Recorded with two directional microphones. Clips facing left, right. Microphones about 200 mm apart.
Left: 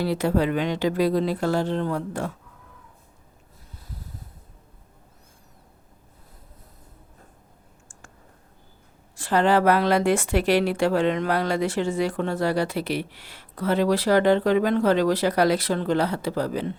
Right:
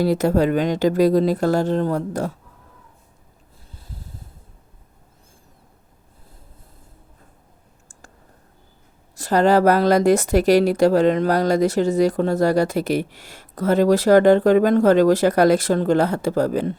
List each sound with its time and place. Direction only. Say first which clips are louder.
0.0 s speech: right 5 dB; 45° right (ahead or behind)
3.7 s snort: right 1 dB; 30° right (ahead or behind)
9.1 s speech: right 4 dB; 40° right (ahead or behind)